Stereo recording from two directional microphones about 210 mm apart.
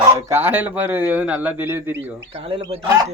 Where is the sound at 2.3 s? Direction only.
25° right (ahead or behind).